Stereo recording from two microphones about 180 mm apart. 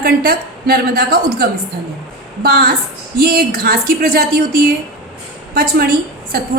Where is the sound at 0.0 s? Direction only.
55° right (ahead or behind).